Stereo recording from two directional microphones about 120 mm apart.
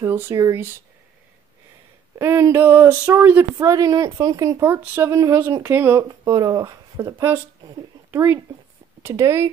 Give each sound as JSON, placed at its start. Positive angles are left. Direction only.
{"t": 0.0, "sound": "speech", "side_deg": -25}
{"t": 2.1, "sound": "speech", "side_deg": -20}
{"t": 3.6, "sound": "speech", "side_deg": -35}
{"t": 4.6, "sound": "speech", "side_deg": -20}
{"t": 6.0, "sound": "speech", "side_deg": -30}